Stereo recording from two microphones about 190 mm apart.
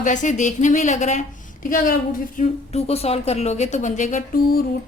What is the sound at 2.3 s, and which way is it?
Speech, 35° left (ahead or behind).